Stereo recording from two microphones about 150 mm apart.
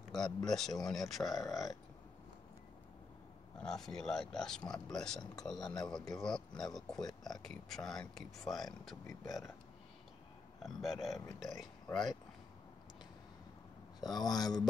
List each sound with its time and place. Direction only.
0.5 s speech: centre (ahead or behind)
3.5 s speech: 5° left (ahead or behind)
4.6 s speech: 25° left (ahead or behind)
4.9 s speech: 5° left (ahead or behind)
9.2 s speech: 25° left (ahead or behind)
10.6 s speech: centre (ahead or behind)
14.0 s speech: 25° left (ahead or behind)